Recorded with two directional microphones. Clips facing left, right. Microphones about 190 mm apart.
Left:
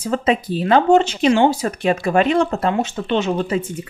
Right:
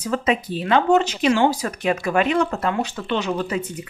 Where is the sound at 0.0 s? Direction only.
30° left (ahead or behind).